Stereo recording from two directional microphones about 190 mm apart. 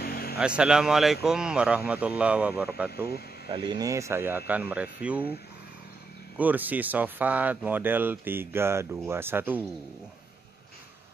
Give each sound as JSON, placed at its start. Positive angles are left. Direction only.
{"t": 0.0, "sound": "vehicle", "side_deg": 55}
{"t": 0.4, "sound": "speech", "side_deg": -5}
{"t": 3.5, "sound": "speech", "side_deg": -25}
{"t": 6.3, "sound": "speech", "side_deg": -10}